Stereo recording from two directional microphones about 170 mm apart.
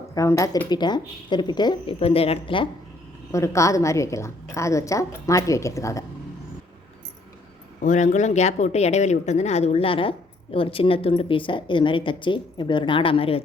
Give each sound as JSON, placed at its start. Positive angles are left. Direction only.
{"t": 0.1, "sound": "speech", "side_deg": 20}
{"t": 3.3, "sound": "a woman's voice", "side_deg": 15}
{"t": 7.8, "sound": "a woman's voice", "side_deg": 45}